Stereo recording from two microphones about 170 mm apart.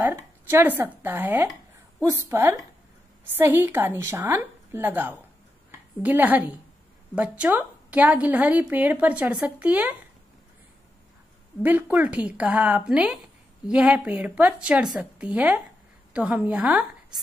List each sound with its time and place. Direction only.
0.0 s a woman's voice: 15° right (ahead or behind)
11.6 s a woman's voice: 10° right (ahead or behind)